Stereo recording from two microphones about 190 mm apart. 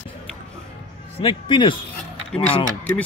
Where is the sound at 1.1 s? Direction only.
25° left (ahead or behind).